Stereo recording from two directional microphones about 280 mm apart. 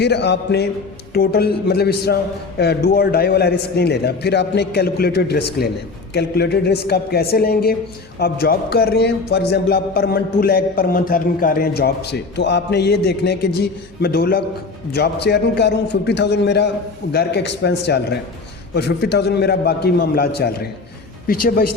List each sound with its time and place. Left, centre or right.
0.0 s a man's voice: left